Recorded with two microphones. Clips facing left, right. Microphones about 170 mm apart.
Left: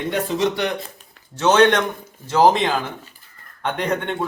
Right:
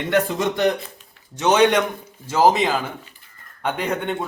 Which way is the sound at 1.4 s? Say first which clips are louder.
Left 1 dB; 10° right (ahead or behind).